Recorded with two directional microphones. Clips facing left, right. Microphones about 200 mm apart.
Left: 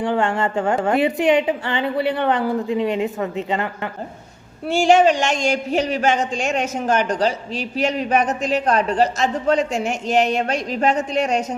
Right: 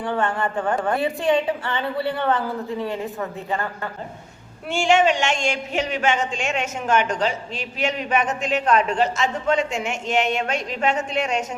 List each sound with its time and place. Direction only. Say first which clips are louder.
0.0 s a woman's voice: left 4 dB; 20° left (ahead or behind)
4.7 s speech: left 4 dB; 40° left (ahead or behind)